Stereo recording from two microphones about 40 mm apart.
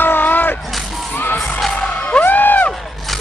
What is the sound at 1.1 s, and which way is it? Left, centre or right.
Children shouting, left.